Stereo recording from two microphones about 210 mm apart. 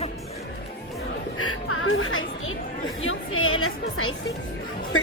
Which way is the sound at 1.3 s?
90° left.